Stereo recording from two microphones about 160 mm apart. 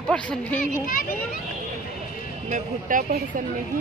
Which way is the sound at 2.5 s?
55° right (ahead or behind).